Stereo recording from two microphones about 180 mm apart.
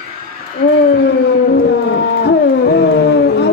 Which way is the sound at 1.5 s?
70° left (ahead or behind).